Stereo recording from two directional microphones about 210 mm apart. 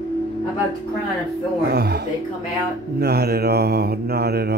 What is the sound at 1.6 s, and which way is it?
Mantra, 50° right (ahead or behind).